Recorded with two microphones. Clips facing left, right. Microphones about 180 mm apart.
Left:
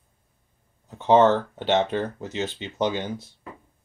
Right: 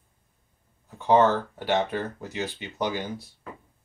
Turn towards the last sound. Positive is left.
turn(degrees=20)  # may be behind; listen again after turning